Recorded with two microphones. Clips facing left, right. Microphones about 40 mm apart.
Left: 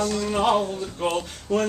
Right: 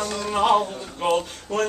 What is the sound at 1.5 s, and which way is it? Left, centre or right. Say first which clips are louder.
Speech: left 1 dB; centre.